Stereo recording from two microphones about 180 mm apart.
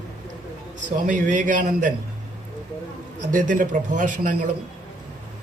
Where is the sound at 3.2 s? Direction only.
45° right (ahead or behind).